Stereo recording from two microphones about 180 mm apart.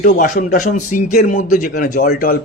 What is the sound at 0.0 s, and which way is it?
A man's voice, 50° left (ahead or behind).